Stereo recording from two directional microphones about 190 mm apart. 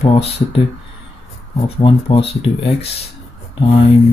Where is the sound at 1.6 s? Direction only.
30° left (ahead or behind).